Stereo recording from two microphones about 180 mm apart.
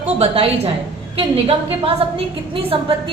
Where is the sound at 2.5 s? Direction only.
30° right (ahead or behind).